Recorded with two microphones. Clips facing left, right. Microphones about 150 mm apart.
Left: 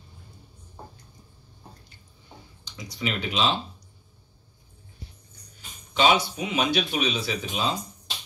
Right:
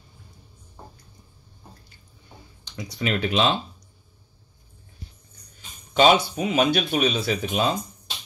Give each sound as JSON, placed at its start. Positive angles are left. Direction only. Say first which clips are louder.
{"t": 2.6, "sound": "speech", "louder": "right 3 dB", "side_deg": -55}
{"t": 5.9, "sound": "speech", "louder": "right 4 dB", "side_deg": -50}